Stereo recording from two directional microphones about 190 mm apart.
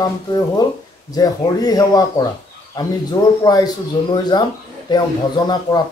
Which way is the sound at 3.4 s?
20° left (ahead or behind).